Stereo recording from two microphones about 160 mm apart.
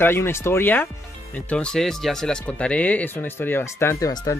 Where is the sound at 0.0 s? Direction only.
15° left (ahead or behind).